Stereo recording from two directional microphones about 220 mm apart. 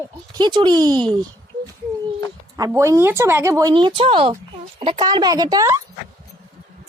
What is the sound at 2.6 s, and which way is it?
Speech, 15° right (ahead or behind).